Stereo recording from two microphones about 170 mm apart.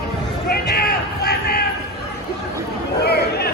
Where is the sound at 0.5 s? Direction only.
65° left (ahead or behind).